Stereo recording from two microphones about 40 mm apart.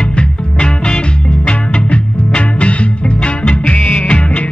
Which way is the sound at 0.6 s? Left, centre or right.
Left.